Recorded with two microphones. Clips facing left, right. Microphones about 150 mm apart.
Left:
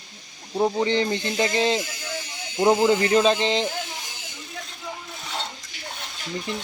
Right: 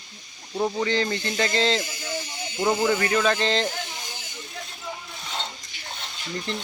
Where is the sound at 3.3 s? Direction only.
15° left (ahead or behind).